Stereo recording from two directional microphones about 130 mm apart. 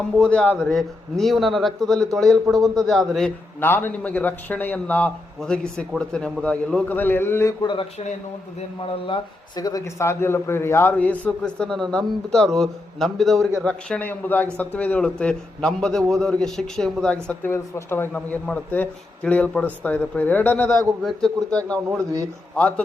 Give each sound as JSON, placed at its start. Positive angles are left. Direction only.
{"t": 0.2, "sound": "a man's voice", "side_deg": 10}
{"t": 3.6, "sound": "a man's voice", "side_deg": 15}
{"t": 7.6, "sound": "speech", "side_deg": 35}
{"t": 9.0, "sound": "a man's voice", "side_deg": 35}
{"t": 17.2, "sound": "a man's voice", "side_deg": 15}
{"t": 21.8, "sound": "a man's voice", "side_deg": -25}